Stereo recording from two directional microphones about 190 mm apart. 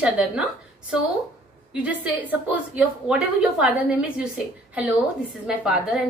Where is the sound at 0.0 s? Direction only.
5° right (ahead or behind).